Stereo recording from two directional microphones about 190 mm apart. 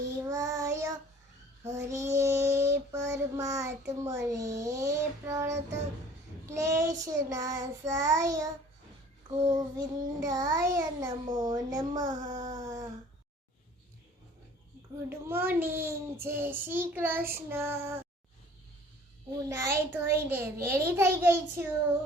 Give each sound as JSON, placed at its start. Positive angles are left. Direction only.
{"t": 0.2, "sound": "child singing", "side_deg": -15}
{"t": 3.1, "sound": "a child's voice", "side_deg": -15}
{"t": 9.5, "sound": "child singing", "side_deg": -20}
{"t": 12.5, "sound": "a sound", "side_deg": -20}
{"t": 15.1, "sound": "a child's voice", "side_deg": -10}
{"t": 19.5, "sound": "a child's voice", "side_deg": -15}